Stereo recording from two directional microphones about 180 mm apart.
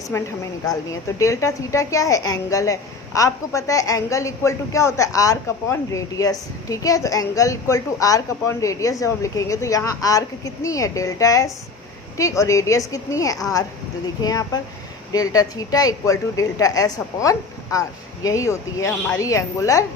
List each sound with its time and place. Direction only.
0.1 s a woman's voice: 20° left (ahead or behind)